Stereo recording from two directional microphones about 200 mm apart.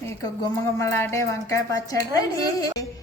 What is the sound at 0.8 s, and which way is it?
A woman's voice, 10° left (ahead or behind).